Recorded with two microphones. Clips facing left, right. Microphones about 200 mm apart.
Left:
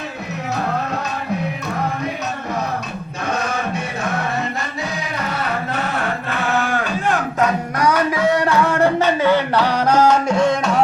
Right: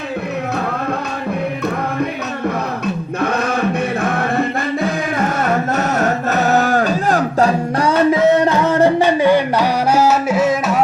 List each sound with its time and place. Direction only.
3.2 s chant: 55° right (ahead or behind)
4.0 s music: 55° right (ahead or behind); by 10.8 s 5° right (ahead or behind)